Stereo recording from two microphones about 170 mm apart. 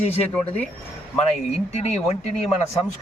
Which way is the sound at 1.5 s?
40° left (ahead or behind).